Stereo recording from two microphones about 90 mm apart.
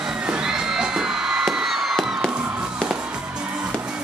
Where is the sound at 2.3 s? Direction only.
10° right (ahead or behind).